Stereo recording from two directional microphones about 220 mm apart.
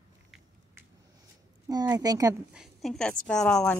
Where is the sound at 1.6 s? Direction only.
15° right (ahead or behind).